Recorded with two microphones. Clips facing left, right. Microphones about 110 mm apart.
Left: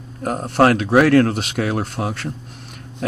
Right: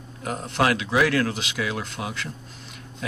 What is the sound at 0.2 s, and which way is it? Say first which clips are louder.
Speech: left 8 dB; 45° left (ahead or behind).